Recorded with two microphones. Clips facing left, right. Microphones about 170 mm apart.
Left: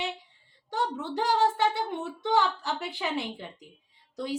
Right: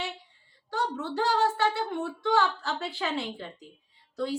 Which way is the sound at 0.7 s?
20° left (ahead or behind).